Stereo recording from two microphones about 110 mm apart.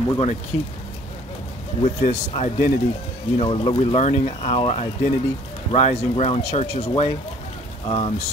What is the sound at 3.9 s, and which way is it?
Speech, 85° left.